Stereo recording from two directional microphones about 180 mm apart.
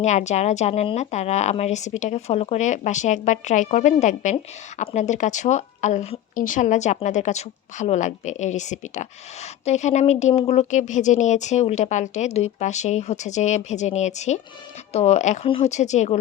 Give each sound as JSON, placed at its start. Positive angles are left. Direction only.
{"t": 0.0, "sound": "speech", "side_deg": 40}